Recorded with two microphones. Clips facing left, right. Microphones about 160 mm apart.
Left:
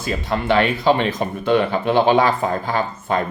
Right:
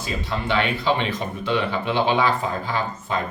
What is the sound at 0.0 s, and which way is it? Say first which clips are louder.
Speech: left 5 dB; 50° left (ahead or behind).